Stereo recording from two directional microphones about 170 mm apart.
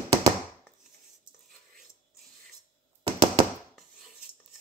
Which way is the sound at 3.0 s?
30° right (ahead or behind).